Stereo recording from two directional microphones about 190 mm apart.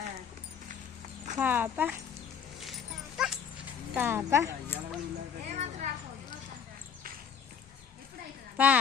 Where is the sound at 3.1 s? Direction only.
Centre (ahead or behind).